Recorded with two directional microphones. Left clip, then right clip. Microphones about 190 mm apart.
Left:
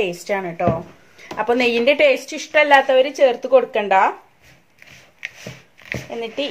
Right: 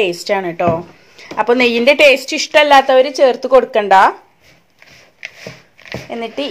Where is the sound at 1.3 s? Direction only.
25° right (ahead or behind).